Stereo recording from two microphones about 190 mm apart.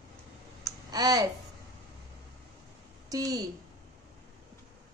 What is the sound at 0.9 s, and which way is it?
Speech, 20° right (ahead or behind).